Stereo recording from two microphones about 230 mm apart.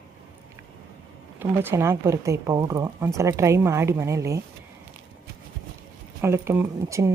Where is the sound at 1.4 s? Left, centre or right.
Centre.